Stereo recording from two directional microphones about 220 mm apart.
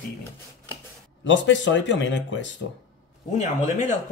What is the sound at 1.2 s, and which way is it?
Speech, 55° left (ahead or behind).